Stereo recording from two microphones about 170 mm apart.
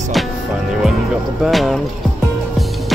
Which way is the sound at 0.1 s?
Centre (ahead or behind).